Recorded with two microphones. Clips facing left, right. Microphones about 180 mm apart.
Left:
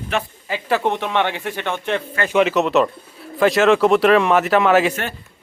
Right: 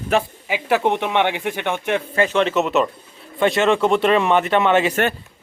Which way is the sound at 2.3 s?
5° left (ahead or behind).